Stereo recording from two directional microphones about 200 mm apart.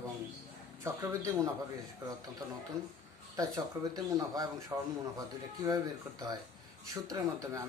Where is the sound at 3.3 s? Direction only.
20° right (ahead or behind).